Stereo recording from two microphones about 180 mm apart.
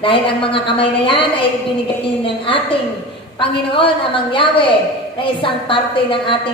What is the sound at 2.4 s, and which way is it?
Speech, 30° left (ahead or behind).